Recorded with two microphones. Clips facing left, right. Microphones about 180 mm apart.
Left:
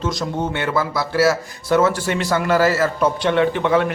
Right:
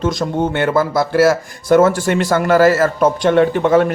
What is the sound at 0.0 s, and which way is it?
Speech, 50° right (ahead or behind).